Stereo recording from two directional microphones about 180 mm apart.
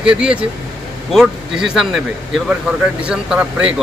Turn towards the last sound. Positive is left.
turn(degrees=-5)  # may be behind; listen again after turning